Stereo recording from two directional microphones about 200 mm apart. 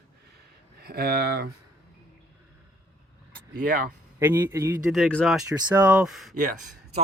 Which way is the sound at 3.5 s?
45° right (ahead or behind).